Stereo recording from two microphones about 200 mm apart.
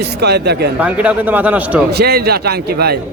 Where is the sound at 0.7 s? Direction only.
5° right (ahead or behind).